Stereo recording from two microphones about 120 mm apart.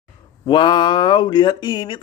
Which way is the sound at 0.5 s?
40° left (ahead or behind).